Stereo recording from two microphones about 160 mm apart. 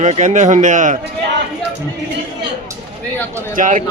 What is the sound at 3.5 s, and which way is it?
Speech, 55° right (ahead or behind).